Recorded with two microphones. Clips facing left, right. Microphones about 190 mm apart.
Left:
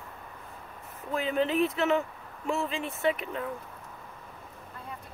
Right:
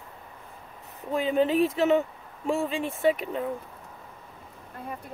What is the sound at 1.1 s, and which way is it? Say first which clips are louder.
Speech: right 4 dB; 30° right (ahead or behind).